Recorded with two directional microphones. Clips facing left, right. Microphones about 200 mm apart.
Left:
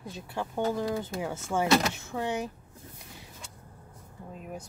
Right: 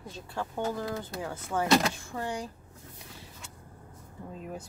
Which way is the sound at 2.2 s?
20° left (ahead or behind).